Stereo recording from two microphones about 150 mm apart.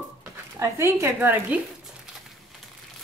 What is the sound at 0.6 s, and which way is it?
Speech, 20° right (ahead or behind).